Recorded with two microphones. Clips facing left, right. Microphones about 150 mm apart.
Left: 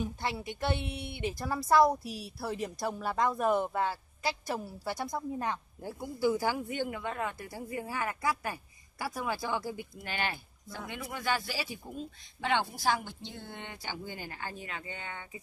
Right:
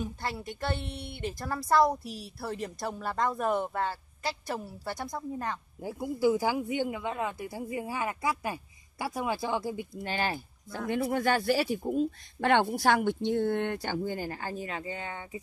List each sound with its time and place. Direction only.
0.0 s a woman's voice: 10° left (ahead or behind)
5.8 s speech: 10° right (ahead or behind); by 10.8 s 35° right (ahead or behind)
11.1 s speech: 50° right (ahead or behind); by 15.4 s 35° right (ahead or behind)